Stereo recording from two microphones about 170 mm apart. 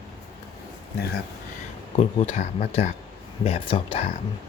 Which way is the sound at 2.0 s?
35° left (ahead or behind).